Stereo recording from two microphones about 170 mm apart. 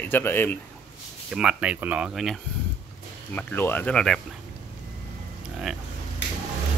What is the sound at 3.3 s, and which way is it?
Speech, 10° left (ahead or behind).